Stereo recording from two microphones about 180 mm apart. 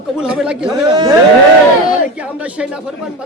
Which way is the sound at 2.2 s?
5° right (ahead or behind).